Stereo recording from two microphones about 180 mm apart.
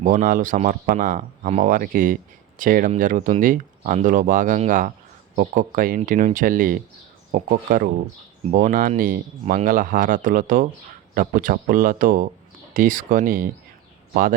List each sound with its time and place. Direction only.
0.0 s speech: 45° right (ahead or behind)